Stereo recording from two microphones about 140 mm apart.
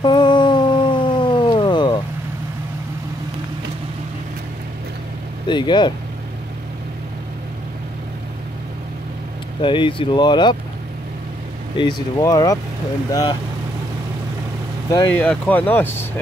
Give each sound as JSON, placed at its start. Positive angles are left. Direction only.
{"t": 0.0, "sound": "a sound", "side_deg": 35}
{"t": 5.5, "sound": "speech", "side_deg": 35}
{"t": 9.6, "sound": "speech", "side_deg": 40}
{"t": 11.8, "sound": "speech", "side_deg": 25}
{"t": 15.1, "sound": "speech", "side_deg": 10}